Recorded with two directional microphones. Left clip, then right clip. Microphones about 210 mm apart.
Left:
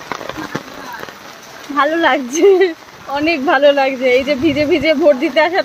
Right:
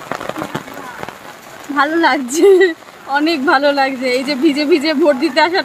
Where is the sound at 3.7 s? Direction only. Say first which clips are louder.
Left 3 dB; 50° right (ahead or behind).